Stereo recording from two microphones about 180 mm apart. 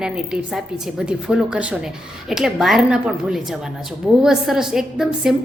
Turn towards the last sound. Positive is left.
turn(degrees=-5)  # may be behind; listen again after turning